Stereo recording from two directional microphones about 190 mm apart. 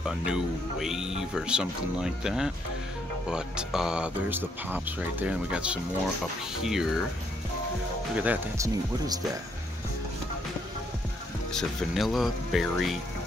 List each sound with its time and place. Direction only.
0.0 s speech: centre (ahead or behind)
8.2 s speech: 10° right (ahead or behind)
11.5 s speech: centre (ahead or behind)